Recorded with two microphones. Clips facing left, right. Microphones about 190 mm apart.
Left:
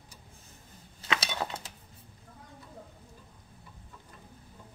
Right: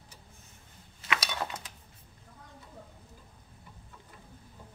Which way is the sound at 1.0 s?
25° left (ahead or behind).